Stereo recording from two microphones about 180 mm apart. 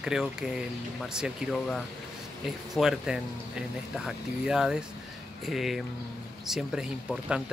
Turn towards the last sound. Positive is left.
turn(degrees=-5)  # may be behind; listen again after turning